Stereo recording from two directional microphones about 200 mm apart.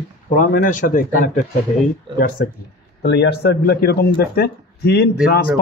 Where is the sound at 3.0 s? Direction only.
55° left (ahead or behind).